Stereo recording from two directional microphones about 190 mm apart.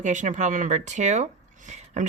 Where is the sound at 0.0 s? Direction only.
40° right (ahead or behind).